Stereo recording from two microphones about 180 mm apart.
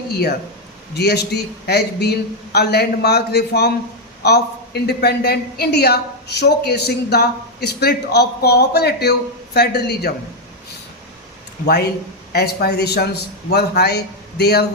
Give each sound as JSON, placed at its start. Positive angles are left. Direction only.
{"t": 0.9, "sound": "a woman's voice", "side_deg": 65}
{"t": 12.3, "sound": "a woman's voice", "side_deg": 60}